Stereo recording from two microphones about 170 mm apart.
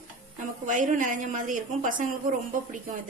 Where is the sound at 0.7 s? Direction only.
50° right (ahead or behind).